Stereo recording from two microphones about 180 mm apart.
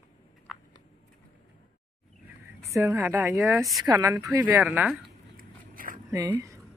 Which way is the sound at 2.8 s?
15° right (ahead or behind).